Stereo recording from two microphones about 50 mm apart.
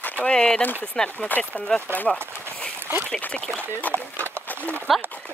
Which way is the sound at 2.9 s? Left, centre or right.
Right.